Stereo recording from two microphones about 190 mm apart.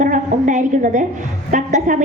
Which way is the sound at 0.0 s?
40° right (ahead or behind).